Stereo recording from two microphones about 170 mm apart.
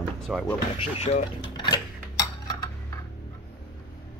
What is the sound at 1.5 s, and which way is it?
Dishes, 25° left (ahead or behind).